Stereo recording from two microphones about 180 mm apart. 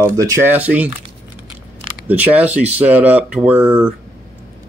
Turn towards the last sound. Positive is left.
turn(degrees=-10)  # may be behind; listen again after turning